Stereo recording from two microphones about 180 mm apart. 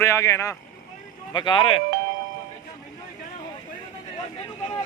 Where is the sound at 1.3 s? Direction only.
25° left (ahead or behind).